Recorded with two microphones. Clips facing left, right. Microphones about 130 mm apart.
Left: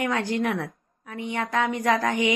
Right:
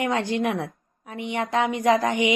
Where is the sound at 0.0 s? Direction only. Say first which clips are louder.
Right 1 dB; 20° right (ahead or behind).